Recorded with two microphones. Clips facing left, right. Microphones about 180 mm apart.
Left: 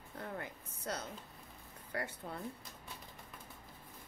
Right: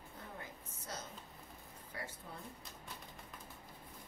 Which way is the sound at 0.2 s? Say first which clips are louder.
Left 7 dB; 65° left (ahead or behind).